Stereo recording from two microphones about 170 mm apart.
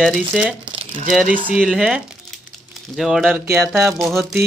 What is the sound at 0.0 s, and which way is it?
Speech, 5° right (ahead or behind).